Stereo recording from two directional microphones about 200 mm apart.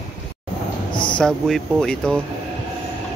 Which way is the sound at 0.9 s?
25° left (ahead or behind).